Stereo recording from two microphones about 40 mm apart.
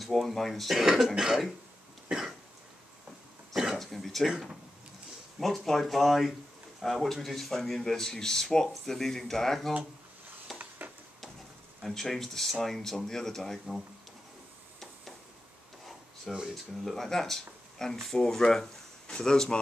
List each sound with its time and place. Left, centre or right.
0.0 s speech: centre
0.7 s speech: centre
2.0 s cough: centre
3.5 s a sound: centre
3.8 s speech: centre
5.4 s speech: centre
10.5 s a sound: centre
11.8 s speech: centre
16.3 s speech: centre
16.8 s speech: centre